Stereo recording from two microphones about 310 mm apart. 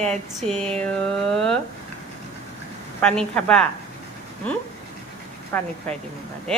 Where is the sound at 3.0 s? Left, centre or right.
Centre.